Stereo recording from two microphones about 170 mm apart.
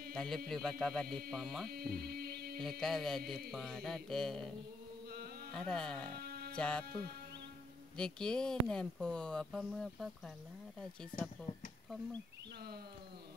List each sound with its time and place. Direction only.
0.1 s a man's voice: 5° left (ahead or behind)
1.7 s a sound: 65° right (ahead or behind)
2.8 s speech: centre (ahead or behind)
6.1 s music: 65° right (ahead or behind)
6.5 s speech: 5° left (ahead or behind)
8.0 s speech: 5° left (ahead or behind)